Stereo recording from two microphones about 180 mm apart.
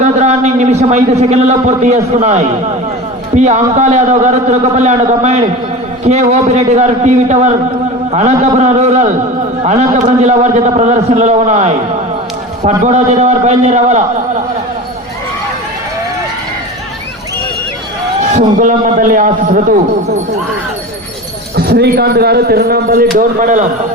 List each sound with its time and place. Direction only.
0.0 s a man's voice: 40° right (ahead or behind)
12.8 s a man's voice: 40° right (ahead or behind)
18.2 s a man's voice: 45° right (ahead or behind)
21.5 s speech: 65° right (ahead or behind)
23.1 s a man's voice: 45° right (ahead or behind)